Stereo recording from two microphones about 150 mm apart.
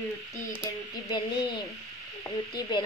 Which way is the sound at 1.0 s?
30° left (ahead or behind).